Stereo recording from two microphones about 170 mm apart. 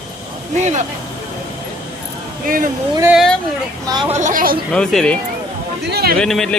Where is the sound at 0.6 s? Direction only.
45° right (ahead or behind).